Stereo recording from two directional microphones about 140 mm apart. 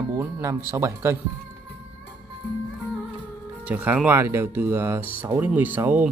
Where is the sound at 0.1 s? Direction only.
20° right (ahead or behind).